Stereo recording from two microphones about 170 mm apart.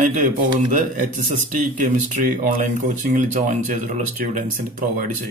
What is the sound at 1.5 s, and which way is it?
Speech, 50° right (ahead or behind).